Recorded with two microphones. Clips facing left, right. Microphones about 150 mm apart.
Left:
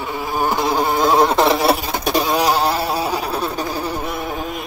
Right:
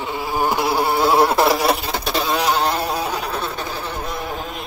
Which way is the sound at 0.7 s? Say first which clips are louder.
Left 1 dB; 15° left (ahead or behind).